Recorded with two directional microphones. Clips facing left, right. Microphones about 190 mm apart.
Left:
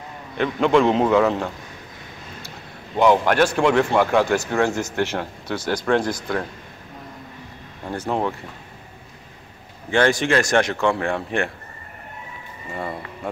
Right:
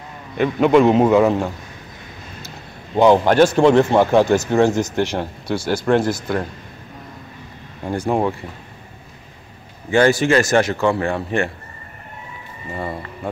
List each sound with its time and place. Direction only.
0.4 s speech: 10° right (ahead or behind)
3.0 s speech: 30° right (ahead or behind); by 6.4 s 5° right (ahead or behind)
7.9 s speech: 10° right (ahead or behind)
9.8 s a man's voice: 5° right (ahead or behind)
12.7 s a man's voice: centre (ahead or behind)